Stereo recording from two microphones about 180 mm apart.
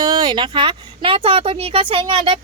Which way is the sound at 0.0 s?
25° right (ahead or behind).